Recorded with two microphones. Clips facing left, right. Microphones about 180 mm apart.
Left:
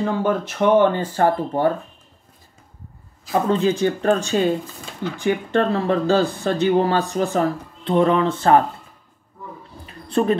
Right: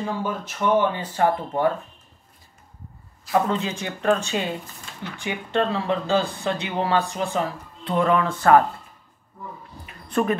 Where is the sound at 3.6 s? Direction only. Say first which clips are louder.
Left 8 dB; 35° left (ahead or behind).